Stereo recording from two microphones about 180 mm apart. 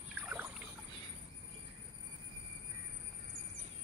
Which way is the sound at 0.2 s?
10° right (ahead or behind).